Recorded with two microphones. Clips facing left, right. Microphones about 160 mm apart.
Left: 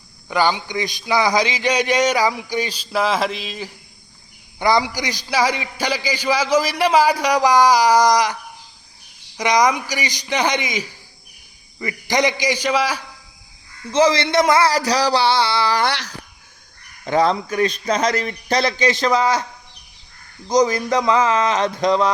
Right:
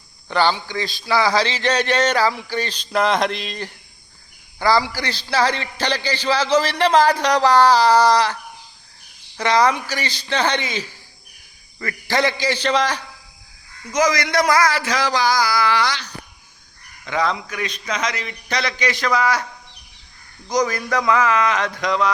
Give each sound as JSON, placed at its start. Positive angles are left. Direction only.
{"t": 0.3, "sound": "a man's voice", "side_deg": 10}
{"t": 4.6, "sound": "a man's voice", "side_deg": 20}
{"t": 9.4, "sound": "a man's voice", "side_deg": 15}
{"t": 13.9, "sound": "a sound", "side_deg": 30}
{"t": 14.7, "sound": "a man's voice", "side_deg": 35}
{"t": 15.8, "sound": "speech", "side_deg": 70}
{"t": 17.1, "sound": "a man's voice", "side_deg": 35}
{"t": 20.5, "sound": "a sound", "side_deg": 20}